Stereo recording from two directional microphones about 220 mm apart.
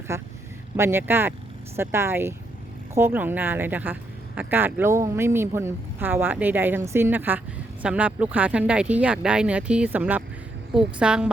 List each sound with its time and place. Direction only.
0.1 s a woman's voice: 15° right (ahead or behind)